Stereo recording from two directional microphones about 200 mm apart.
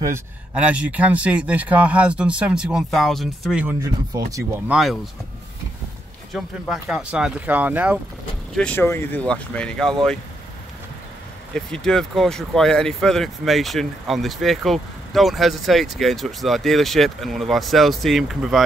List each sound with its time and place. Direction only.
0.0 s speech: 10° right (ahead or behind)
4.3 s speech: 15° right (ahead or behind)
6.3 s speech: centre (ahead or behind)
8.5 s speech: 10° left (ahead or behind)
11.5 s speech: 5° left (ahead or behind)